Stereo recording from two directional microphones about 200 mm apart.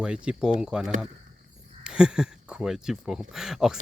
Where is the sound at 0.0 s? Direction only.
5° right (ahead or behind).